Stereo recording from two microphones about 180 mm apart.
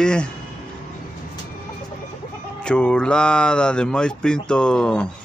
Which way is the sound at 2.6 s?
5° left (ahead or behind).